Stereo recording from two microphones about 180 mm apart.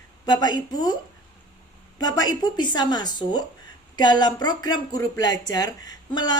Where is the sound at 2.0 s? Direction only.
20° left (ahead or behind).